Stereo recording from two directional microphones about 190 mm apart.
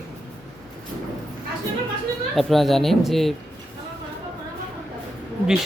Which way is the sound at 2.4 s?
Centre (ahead or behind).